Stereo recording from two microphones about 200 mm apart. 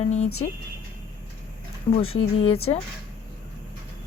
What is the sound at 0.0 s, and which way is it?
Speech, 35° left (ahead or behind).